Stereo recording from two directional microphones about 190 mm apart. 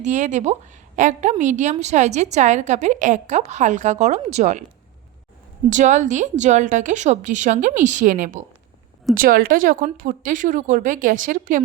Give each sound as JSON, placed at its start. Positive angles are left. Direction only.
{"t": 0.0, "sound": "a woman's voice", "side_deg": -40}
{"t": 5.7, "sound": "a woman's voice", "side_deg": -40}